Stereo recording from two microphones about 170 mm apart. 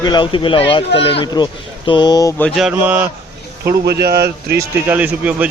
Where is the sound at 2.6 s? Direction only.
5° right (ahead or behind).